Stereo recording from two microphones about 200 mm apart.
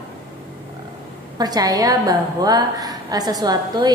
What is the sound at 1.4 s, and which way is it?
A woman's voice, 20° right (ahead or behind).